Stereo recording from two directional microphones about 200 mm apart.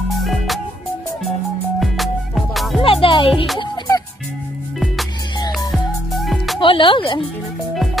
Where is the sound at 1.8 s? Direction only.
Centre (ahead or behind).